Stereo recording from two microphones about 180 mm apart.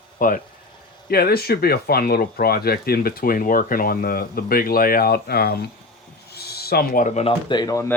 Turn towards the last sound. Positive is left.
turn(degrees=20)  # may be behind; listen again after turning